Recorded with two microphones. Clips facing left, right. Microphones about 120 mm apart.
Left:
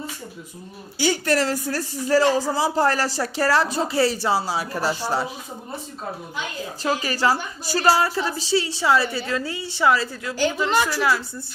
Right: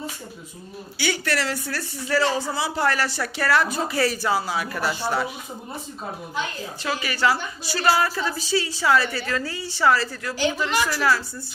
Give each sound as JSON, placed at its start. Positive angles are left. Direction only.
{"t": 0.9, "sound": "speech", "side_deg": 45}
{"t": 7.0, "sound": "a woman's voice", "side_deg": 35}